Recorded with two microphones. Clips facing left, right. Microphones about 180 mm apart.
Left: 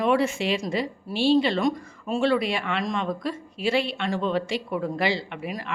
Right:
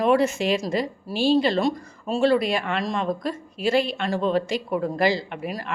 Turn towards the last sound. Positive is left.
turn(degrees=-40)  # may be behind; listen again after turning